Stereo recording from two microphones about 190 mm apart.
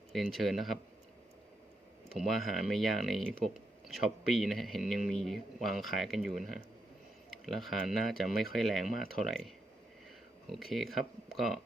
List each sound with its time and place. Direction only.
0.1 s speech: centre (ahead or behind)
2.0 s speech: centre (ahead or behind)